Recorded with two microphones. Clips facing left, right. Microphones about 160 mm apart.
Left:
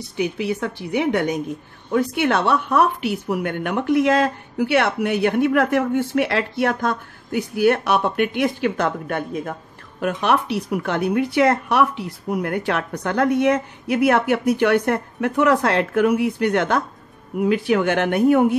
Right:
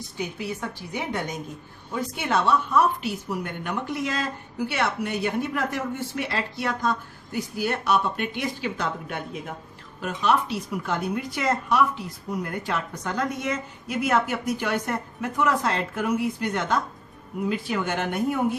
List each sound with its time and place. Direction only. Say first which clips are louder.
0.2 s a woman's voice: left 8 dB; 70° left (ahead or behind); by 9.5 s 50° left (ahead or behind)
9.9 s a woman's voice: left 4 dB; 60° left (ahead or behind)